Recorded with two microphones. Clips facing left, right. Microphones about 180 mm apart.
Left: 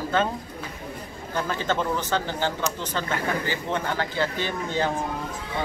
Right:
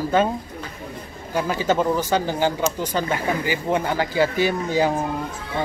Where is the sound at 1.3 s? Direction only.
10° right (ahead or behind).